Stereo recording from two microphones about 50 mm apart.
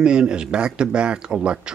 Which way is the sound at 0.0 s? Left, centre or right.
Centre.